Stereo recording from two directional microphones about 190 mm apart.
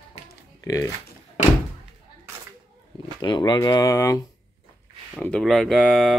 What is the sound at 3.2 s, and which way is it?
Speech, 25° left (ahead or behind).